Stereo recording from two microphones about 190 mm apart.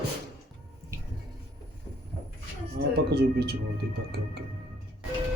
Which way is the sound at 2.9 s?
55° right (ahead or behind).